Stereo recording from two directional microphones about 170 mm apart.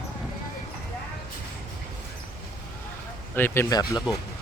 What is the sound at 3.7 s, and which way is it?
Speech, 25° left (ahead or behind).